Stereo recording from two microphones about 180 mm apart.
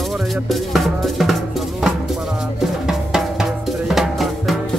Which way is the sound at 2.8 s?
Centre (ahead or behind).